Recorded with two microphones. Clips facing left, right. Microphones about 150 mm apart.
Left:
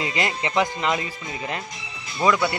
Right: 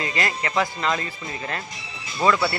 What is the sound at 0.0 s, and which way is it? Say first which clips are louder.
Speech: left 1 dB; 20° left (ahead or behind).